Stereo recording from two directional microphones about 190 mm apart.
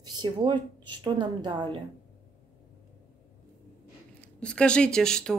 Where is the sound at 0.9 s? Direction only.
25° right (ahead or behind).